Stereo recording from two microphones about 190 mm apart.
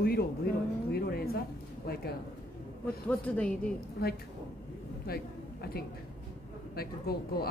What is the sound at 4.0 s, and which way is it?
Speech, 55° left (ahead or behind).